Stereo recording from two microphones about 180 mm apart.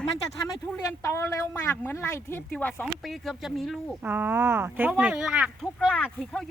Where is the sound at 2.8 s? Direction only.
Centre (ahead or behind).